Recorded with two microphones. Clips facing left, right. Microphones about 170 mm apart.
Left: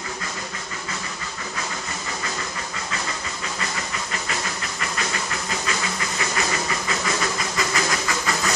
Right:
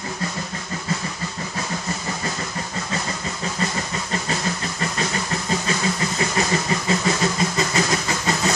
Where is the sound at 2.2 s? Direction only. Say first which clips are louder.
Right 3 dB; 35° right (ahead or behind).